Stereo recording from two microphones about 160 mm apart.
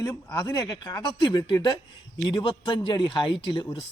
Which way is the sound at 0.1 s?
20° left (ahead or behind).